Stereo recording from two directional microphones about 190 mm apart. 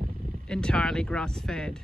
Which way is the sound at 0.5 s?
5° left (ahead or behind).